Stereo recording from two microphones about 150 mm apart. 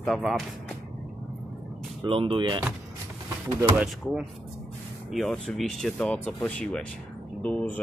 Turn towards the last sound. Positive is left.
turn(degrees=10)  # may be behind; listen again after turning